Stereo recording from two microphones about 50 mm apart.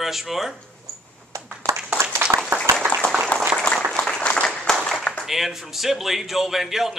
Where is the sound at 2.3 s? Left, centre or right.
Right.